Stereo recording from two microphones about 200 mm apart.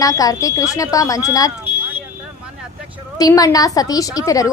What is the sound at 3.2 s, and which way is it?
Speech, 15° left (ahead or behind).